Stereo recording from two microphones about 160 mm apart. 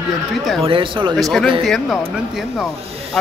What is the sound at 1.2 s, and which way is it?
Speech, centre (ahead or behind).